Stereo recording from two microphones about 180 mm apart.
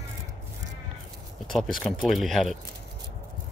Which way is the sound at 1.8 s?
5° left (ahead or behind).